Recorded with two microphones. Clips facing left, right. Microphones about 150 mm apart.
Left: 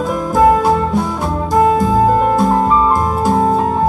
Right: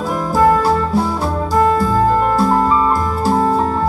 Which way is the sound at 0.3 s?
20° left (ahead or behind).